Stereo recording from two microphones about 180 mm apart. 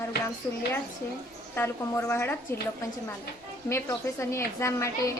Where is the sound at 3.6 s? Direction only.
15° left (ahead or behind).